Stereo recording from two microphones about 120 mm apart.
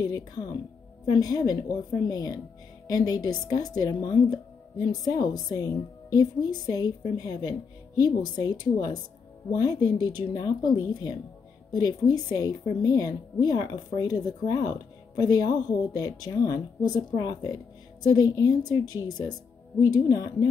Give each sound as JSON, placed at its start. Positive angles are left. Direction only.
{"t": 0.0, "sound": "a woman's voice", "side_deg": 30}
{"t": 11.7, "sound": "a woman's voice", "side_deg": 35}